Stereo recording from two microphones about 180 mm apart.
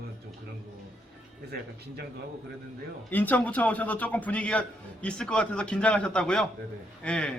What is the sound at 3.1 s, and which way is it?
A man's voice, 10° left (ahead or behind).